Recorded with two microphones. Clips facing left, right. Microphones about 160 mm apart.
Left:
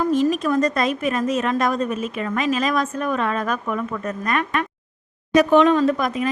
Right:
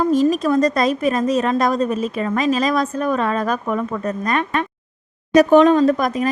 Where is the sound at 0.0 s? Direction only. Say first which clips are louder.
Right 3 dB; 35° right (ahead or behind).